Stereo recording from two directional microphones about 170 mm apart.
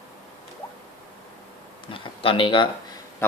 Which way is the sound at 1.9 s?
30° left (ahead or behind).